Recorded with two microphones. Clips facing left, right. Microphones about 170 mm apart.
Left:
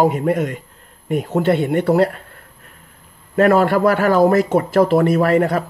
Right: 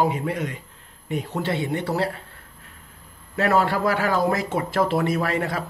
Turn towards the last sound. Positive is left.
turn(degrees=50)  # may be behind; listen again after turning